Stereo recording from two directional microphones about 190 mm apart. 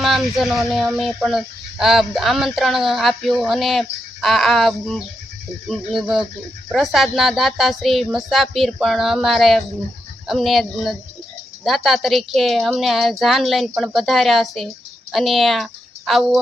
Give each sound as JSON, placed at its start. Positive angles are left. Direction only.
{"t": 0.0, "sound": "a woman's voice", "side_deg": 0}